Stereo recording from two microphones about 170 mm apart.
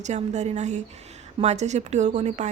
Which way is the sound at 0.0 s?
45° right (ahead or behind).